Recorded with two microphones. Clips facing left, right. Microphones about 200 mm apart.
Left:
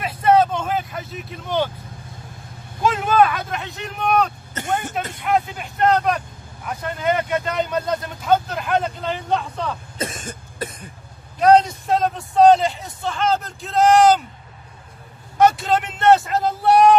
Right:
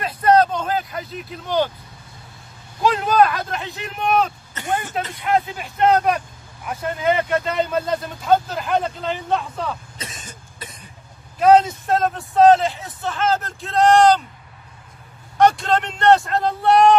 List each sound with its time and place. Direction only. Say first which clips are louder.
0.0 s vehicle: even; 5° left (ahead or behind)
2.8 s speech: even; centre (ahead or behind)
9.9 s cough: left 8 dB; 50° left (ahead or behind)
11.3 s speech: even; centre (ahead or behind)
15.3 s speech: even; 5° left (ahead or behind)